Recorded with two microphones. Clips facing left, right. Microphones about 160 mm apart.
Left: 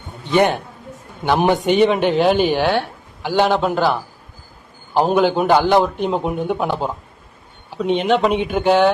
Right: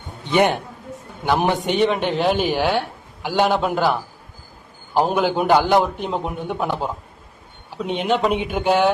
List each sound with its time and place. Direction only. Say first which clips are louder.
0.3 s a man's voice: left 2 dB; 15° right (ahead or behind)
1.2 s speech: left 3 dB; centre (ahead or behind)
5.1 s speech: left 3 dB; 5° right (ahead or behind)
7.8 s speech: left 4 dB; 5° right (ahead or behind)